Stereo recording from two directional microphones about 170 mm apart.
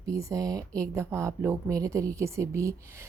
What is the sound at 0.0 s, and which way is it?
Speech, 20° right (ahead or behind).